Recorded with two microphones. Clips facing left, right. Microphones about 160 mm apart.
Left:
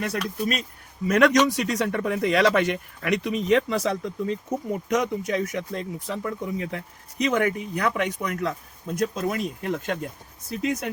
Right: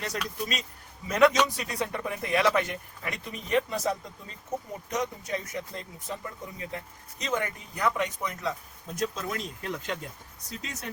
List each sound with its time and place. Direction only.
0.0 s speech: 55° left (ahead or behind)
1.0 s speech: 70° left (ahead or behind)
9.0 s speech: 55° left (ahead or behind)